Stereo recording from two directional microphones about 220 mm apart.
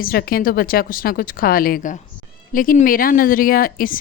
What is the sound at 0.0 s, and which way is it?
Speech, 45° left (ahead or behind).